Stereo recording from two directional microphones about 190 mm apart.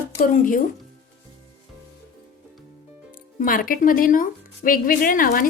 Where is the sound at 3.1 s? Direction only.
45° left (ahead or behind).